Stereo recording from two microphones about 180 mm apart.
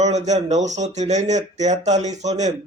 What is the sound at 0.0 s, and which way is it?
A man's voice, 40° right (ahead or behind).